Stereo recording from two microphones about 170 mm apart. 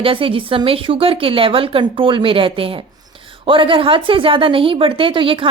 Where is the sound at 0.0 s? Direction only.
30° right (ahead or behind).